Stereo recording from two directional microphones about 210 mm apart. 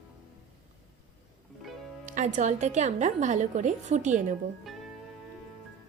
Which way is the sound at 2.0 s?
35° right (ahead or behind).